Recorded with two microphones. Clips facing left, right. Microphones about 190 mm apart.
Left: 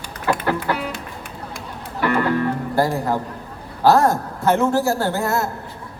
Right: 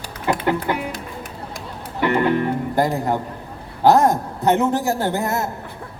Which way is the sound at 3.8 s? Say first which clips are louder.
Right 1 dB; 20° right (ahead or behind).